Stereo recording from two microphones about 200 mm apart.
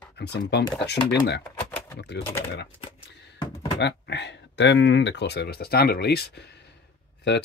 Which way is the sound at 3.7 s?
60° left (ahead or behind).